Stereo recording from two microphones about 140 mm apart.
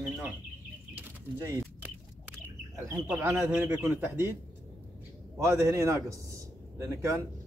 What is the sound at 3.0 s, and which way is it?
Speech, 15° right (ahead or behind).